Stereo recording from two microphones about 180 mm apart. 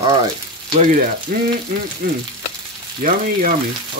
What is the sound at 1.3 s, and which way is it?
Speech, 50° right (ahead or behind).